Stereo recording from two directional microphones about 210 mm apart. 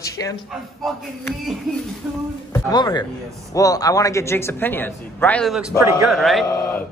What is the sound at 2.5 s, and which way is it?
A man's voice, 20° left (ahead or behind).